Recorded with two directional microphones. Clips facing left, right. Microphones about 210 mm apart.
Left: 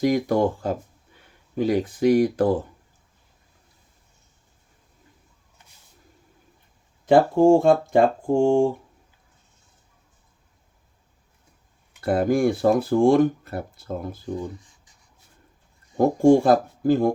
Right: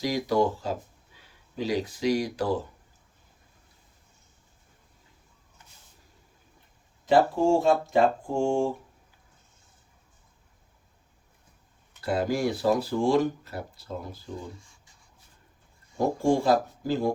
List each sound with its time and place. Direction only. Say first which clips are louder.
0.0 s speech: left 5 dB; 55° left (ahead or behind)
7.0 s speech: left 6 dB; 55° left (ahead or behind)
11.9 s speech: left 6 dB; 55° left (ahead or behind)
16.2 s speech: left 7 dB; 50° left (ahead or behind)